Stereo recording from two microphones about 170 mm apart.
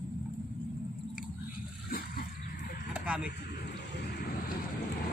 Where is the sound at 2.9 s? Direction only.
5° right (ahead or behind).